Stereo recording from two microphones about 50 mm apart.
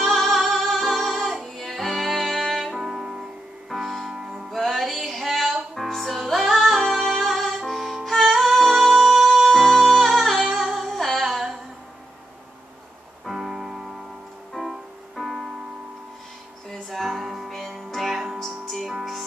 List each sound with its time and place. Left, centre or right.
0.0 s music: centre
4.5 s music: centre
13.2 s music: centre
16.9 s music: centre